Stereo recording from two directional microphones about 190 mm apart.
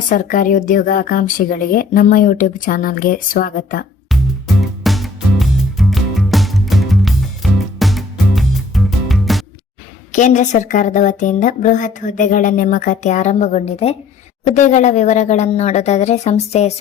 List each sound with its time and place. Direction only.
0.1 s a woman's voice: 45° left (ahead or behind)
4.8 s music: centre (ahead or behind)
10.1 s a woman's voice: 40° left (ahead or behind)